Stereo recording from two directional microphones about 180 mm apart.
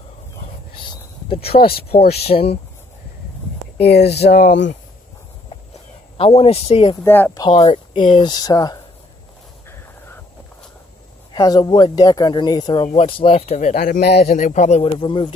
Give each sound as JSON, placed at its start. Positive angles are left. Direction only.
{"t": 0.7, "sound": "a sound", "side_deg": 30}
{"t": 1.9, "sound": "speech", "side_deg": 35}
{"t": 3.8, "sound": "speech", "side_deg": 65}
{"t": 6.1, "sound": "speech", "side_deg": 35}
{"t": 7.0, "sound": "speech", "side_deg": 10}
{"t": 7.4, "sound": "speech", "side_deg": 30}
{"t": 11.3, "sound": "speech", "side_deg": 20}
{"t": 13.7, "sound": "a man's voice", "side_deg": 55}